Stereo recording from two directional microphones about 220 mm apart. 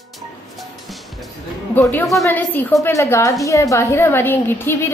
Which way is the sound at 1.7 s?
10° left (ahead or behind).